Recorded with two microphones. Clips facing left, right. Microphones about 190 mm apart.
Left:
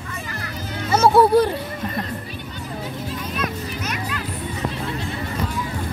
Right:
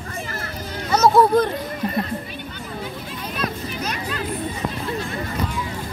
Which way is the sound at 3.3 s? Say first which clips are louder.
Right 3 dB; 35° right (ahead or behind).